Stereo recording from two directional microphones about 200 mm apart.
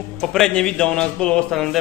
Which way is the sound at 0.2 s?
5° left (ahead or behind).